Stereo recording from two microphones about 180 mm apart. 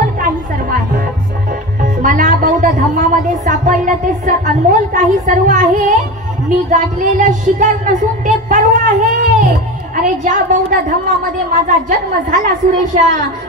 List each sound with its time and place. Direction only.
0.0 s music: 50° right (ahead or behind)
1.8 s a woman's voice: 45° right (ahead or behind)